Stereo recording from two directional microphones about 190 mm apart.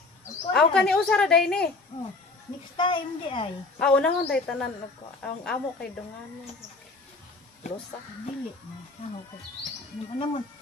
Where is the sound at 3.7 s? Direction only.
5° left (ahead or behind).